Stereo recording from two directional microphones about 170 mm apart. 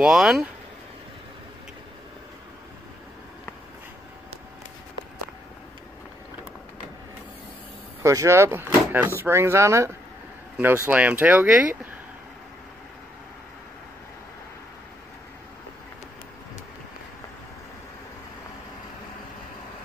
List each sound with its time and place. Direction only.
0.0 s speech: 5° right (ahead or behind)
8.0 s speech: 20° right (ahead or behind)